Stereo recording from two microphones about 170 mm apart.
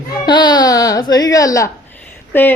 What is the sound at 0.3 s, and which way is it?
A man's voice, 25° left (ahead or behind).